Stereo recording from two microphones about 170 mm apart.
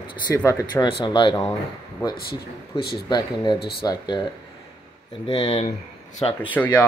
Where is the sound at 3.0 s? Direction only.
25° left (ahead or behind).